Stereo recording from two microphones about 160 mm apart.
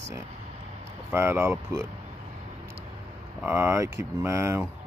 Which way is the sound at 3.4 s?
15° right (ahead or behind).